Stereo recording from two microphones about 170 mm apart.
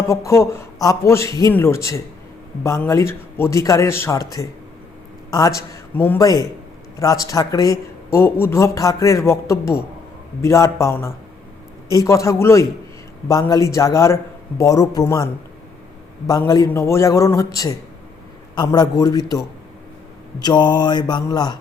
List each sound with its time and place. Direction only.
0.3 s a man's voice: 15° left (ahead or behind)